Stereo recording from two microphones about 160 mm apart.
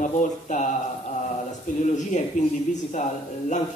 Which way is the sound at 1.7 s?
50° left (ahead or behind).